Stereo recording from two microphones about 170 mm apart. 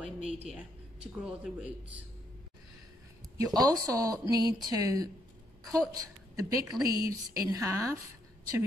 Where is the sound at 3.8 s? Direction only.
20° right (ahead or behind).